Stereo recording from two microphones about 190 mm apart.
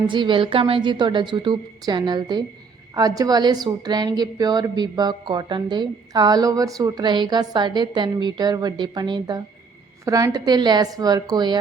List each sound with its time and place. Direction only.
0.1 s a woman's voice: 25° right (ahead or behind)